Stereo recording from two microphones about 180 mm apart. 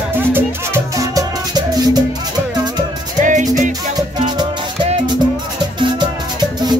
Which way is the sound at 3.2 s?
45° right (ahead or behind).